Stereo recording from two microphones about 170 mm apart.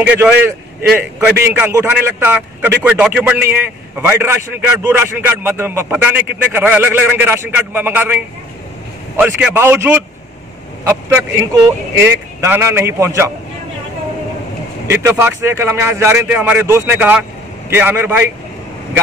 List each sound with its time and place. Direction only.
0.0 s a man's voice: 10° right (ahead or behind)
14.9 s a man's voice: 15° right (ahead or behind)